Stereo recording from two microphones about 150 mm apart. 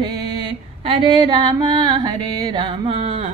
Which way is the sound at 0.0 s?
30° right (ahead or behind).